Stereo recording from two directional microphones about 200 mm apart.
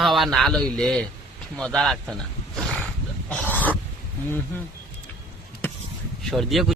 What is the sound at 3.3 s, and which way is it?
Dog, 5° left (ahead or behind).